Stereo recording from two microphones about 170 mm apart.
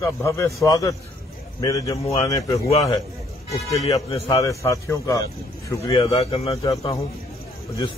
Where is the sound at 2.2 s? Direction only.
20° left (ahead or behind).